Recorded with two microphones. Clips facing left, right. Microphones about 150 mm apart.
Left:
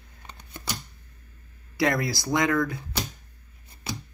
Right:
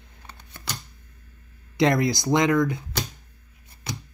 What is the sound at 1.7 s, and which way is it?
Speech, 20° right (ahead or behind).